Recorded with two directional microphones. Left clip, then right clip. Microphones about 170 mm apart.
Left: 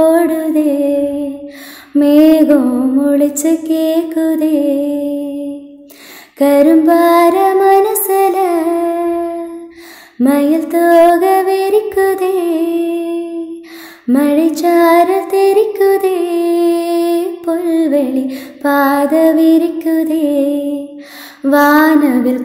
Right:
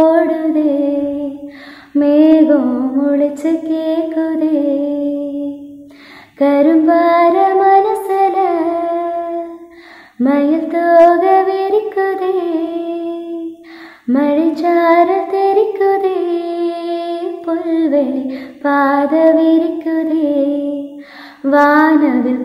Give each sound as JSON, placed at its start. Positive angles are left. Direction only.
{"t": 0.0, "sound": "music", "side_deg": 40}
{"t": 6.3, "sound": "music", "side_deg": 40}
{"t": 10.2, "sound": "music", "side_deg": 40}
{"t": 21.4, "sound": "female singing", "side_deg": 40}